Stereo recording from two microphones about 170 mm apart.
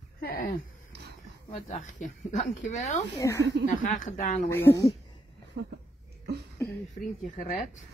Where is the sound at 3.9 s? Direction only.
45° left (ahead or behind).